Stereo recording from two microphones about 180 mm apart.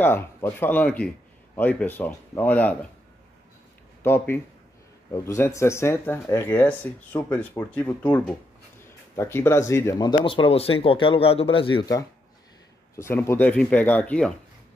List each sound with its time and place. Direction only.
0.0 s speech: 10° left (ahead or behind)
4.0 s speech: 10° left (ahead or behind)